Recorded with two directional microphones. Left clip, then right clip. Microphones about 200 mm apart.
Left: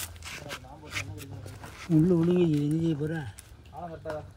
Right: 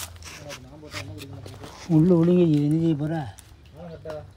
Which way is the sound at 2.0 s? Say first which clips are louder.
Right 7 dB; 45° right (ahead or behind).